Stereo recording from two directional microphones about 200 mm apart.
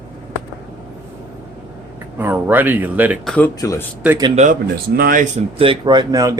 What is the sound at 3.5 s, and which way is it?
Speech, 15° left (ahead or behind).